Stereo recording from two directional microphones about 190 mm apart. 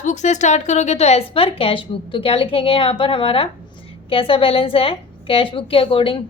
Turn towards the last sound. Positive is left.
turn(degrees=30)  # may be behind; listen again after turning